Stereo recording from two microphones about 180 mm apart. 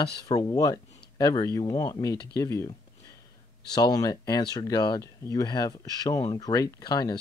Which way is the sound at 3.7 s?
20° left (ahead or behind).